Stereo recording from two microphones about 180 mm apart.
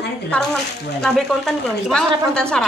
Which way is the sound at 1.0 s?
Centre (ahead or behind).